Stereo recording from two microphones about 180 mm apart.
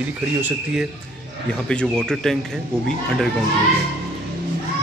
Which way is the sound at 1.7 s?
5° left (ahead or behind).